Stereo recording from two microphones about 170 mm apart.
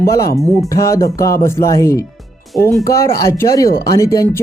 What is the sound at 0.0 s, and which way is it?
Speech, 20° left (ahead or behind).